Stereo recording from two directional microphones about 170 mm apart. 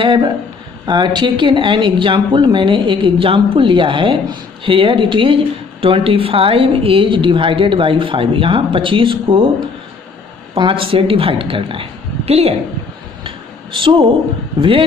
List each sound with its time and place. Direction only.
0.0 s speech: 30° right (ahead or behind)
10.5 s a woman's voice: 30° right (ahead or behind)
13.7 s a woman's voice: 30° right (ahead or behind)